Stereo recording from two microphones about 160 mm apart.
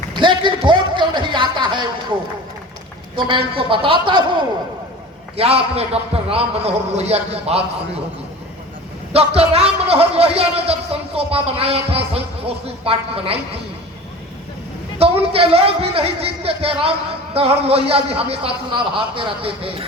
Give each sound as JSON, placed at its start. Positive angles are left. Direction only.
{"t": 0.2, "sound": "a man's voice", "side_deg": -30}
{"t": 3.2, "sound": "a man's voice", "side_deg": -30}
{"t": 9.1, "sound": "a man's voice", "side_deg": -40}
{"t": 14.9, "sound": "a man's voice", "side_deg": -40}